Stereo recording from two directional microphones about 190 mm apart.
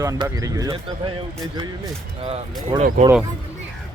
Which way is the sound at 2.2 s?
30° right (ahead or behind).